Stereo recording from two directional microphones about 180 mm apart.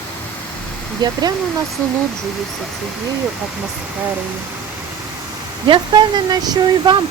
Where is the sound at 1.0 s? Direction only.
20° right (ahead or behind).